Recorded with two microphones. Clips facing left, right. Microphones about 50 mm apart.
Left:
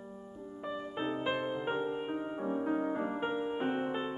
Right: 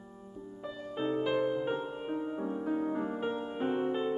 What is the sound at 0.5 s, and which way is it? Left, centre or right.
Music, centre.